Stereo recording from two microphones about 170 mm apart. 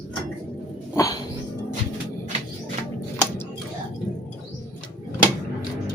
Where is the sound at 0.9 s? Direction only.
20° left (ahead or behind).